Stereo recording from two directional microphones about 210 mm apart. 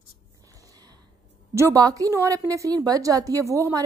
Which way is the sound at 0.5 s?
15° right (ahead or behind).